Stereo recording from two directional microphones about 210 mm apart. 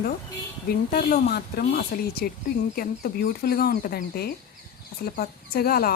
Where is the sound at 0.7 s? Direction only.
45° left (ahead or behind).